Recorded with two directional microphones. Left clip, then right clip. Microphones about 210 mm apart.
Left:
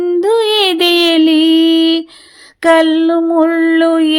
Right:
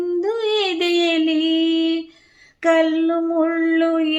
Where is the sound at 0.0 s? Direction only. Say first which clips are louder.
Left 9 dB; 40° left (ahead or behind).